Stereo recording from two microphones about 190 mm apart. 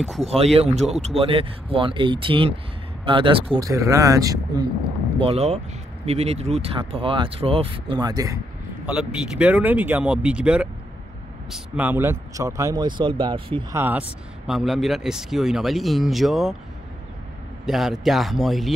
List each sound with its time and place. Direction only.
0.2 s speech: 35° right (ahead or behind)
3.6 s speech: 15° right (ahead or behind)
5.2 s speech: 35° right (ahead or behind)
8.8 s speech: 5° right (ahead or behind); by 13.7 s 25° right (ahead or behind)
13.7 s speech: 10° right (ahead or behind)
17.6 s speech: centre (ahead or behind)